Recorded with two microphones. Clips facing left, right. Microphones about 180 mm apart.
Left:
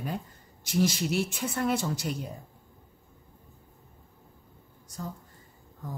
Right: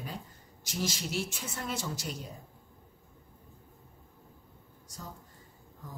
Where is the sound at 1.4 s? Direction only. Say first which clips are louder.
Left 9 dB; 60° left (ahead or behind).